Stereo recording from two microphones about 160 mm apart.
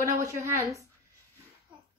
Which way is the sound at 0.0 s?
20° right (ahead or behind).